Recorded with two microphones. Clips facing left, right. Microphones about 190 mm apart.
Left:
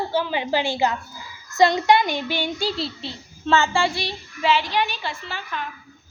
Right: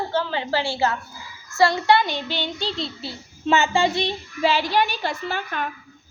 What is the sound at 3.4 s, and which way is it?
Speech, 20° right (ahead or behind).